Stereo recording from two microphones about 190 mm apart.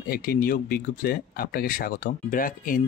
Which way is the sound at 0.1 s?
50° left (ahead or behind).